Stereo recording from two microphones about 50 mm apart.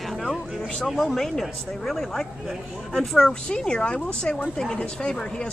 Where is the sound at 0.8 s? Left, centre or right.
Centre.